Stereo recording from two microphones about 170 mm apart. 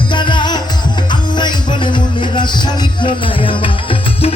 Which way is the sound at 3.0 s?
30° left (ahead or behind).